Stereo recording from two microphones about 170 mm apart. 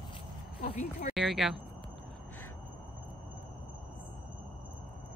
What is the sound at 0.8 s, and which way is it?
Speech, 50° left (ahead or behind).